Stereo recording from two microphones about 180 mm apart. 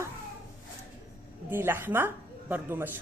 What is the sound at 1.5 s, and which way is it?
A woman's voice, 10° right (ahead or behind).